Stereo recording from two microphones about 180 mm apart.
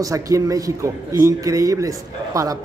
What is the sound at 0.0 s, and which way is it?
Speech, 20° right (ahead or behind).